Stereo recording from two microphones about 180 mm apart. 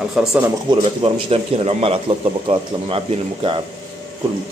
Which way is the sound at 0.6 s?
30° right (ahead or behind).